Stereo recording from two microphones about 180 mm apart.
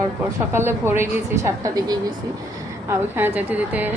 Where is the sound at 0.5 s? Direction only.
15° right (ahead or behind).